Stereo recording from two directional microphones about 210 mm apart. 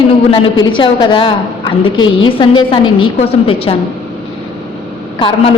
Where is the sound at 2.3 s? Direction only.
25° left (ahead or behind).